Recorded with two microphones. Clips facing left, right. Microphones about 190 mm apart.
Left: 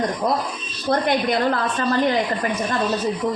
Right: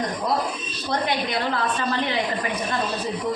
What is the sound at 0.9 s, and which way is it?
A woman's voice, 50° left (ahead or behind).